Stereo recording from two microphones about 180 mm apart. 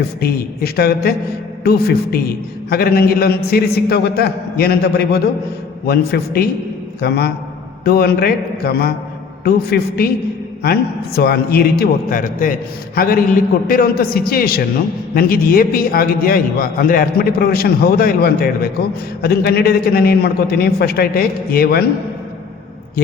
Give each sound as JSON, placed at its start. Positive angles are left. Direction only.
{"t": 0.2, "sound": "a man's voice", "side_deg": 60}